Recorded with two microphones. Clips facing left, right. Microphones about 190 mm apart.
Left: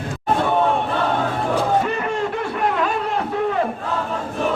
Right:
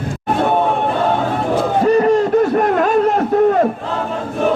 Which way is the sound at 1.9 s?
40° right (ahead or behind).